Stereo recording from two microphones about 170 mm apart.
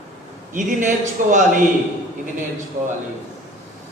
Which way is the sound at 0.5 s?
50° right (ahead or behind).